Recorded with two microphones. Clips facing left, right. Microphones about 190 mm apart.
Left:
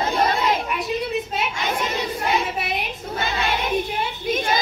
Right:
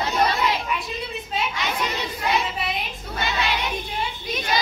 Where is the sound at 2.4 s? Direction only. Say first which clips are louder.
Left 2 dB; 55° left (ahead or behind).